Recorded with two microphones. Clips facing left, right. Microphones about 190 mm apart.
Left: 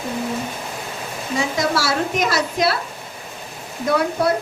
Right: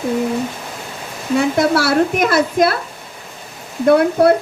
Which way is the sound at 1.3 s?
60° right (ahead or behind).